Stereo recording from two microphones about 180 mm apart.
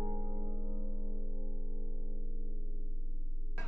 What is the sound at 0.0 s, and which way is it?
Music, 30° right (ahead or behind).